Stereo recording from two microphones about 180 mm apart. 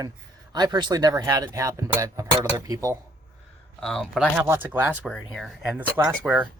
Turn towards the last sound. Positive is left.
turn(degrees=-5)  # may be behind; listen again after turning